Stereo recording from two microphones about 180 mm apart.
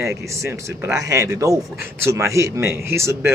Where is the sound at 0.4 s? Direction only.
15° right (ahead or behind).